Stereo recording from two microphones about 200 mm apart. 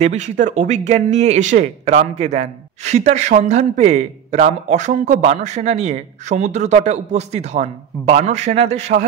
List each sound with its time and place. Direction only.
0.0 s speech: 35° right (ahead or behind)